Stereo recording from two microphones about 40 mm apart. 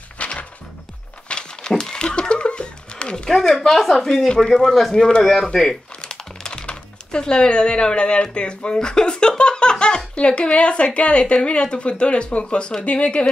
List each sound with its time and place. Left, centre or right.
0.2 s music: left
1.3 s a sound: left
3.6 s speech: centre; by 13.3 s left